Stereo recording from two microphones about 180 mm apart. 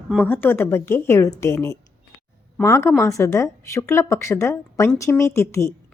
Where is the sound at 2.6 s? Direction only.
15° left (ahead or behind).